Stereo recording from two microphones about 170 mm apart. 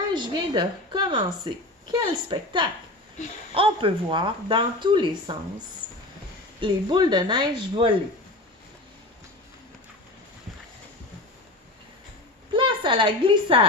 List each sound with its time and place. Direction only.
0.1 s a woman's voice: 25° right (ahead or behind)
6.6 s speech: 25° right (ahead or behind)
12.5 s a woman's voice: 30° right (ahead or behind)